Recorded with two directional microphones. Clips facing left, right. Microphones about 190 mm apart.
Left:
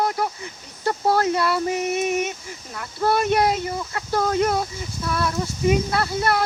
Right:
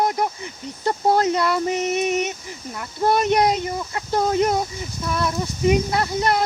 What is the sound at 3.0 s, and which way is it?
Speech, 20° right (ahead or behind).